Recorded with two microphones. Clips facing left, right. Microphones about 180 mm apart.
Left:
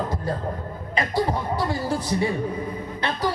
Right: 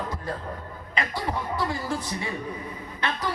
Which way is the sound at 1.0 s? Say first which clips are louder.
Left 5 dB; 35° left (ahead or behind).